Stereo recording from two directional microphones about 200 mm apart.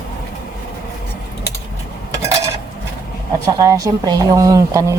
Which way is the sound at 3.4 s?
15° right (ahead or behind).